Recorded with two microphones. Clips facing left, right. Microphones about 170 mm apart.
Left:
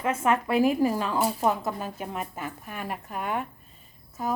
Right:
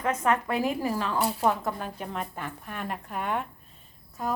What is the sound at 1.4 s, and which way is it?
A woman's voice, 5° left (ahead or behind).